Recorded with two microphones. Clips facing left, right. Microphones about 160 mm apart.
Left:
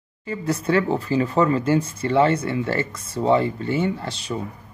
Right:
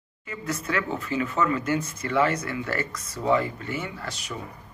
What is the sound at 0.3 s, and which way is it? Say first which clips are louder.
Speech: left 8 dB; 30° left (ahead or behind).